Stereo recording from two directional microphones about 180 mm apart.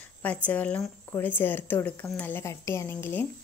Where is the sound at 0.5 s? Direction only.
10° left (ahead or behind).